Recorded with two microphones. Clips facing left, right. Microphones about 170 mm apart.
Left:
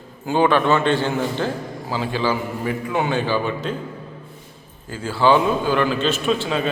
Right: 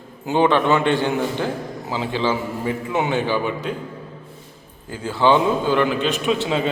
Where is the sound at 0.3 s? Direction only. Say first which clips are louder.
Even; 20° right (ahead or behind).